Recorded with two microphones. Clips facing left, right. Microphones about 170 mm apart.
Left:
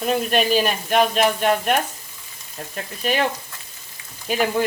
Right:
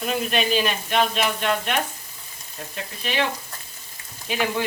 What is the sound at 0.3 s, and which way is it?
Speech, 45° left (ahead or behind).